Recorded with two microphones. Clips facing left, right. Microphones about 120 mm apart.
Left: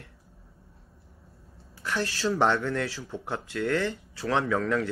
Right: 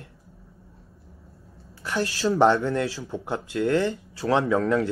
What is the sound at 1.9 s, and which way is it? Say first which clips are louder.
A man's voice: right 4 dB; 25° right (ahead or behind).